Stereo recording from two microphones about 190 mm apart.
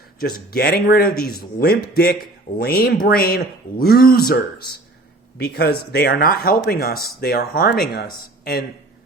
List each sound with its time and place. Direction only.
0.2 s speech: 55° left (ahead or behind)